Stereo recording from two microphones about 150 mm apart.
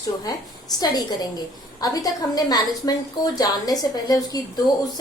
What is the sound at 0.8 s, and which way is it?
A woman's voice, 25° left (ahead or behind).